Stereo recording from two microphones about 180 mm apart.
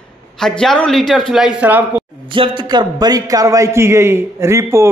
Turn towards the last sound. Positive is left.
turn(degrees=-15)  # may be behind; listen again after turning